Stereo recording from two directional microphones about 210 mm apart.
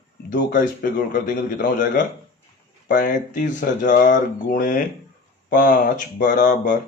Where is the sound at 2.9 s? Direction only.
35° left (ahead or behind).